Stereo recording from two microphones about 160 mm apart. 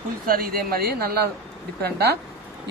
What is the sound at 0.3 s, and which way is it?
Speech, 65° right (ahead or behind).